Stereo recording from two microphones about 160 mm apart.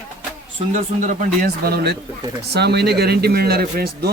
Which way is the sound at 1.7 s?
75° right (ahead or behind).